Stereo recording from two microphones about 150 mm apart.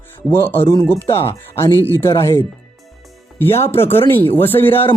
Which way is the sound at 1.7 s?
20° right (ahead or behind).